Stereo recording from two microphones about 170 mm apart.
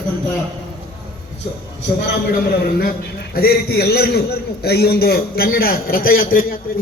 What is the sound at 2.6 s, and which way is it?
A man's voice, 60° left (ahead or behind).